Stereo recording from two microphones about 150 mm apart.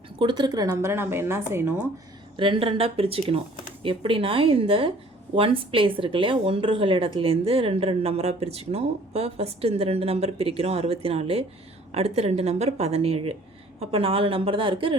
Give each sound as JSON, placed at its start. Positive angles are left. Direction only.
{"t": 0.2, "sound": "speech", "side_deg": -30}
{"t": 2.3, "sound": "a woman's voice", "side_deg": -35}